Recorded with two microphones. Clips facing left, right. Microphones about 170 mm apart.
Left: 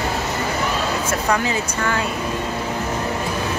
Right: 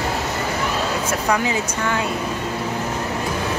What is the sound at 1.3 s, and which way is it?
Speech, 15° right (ahead or behind).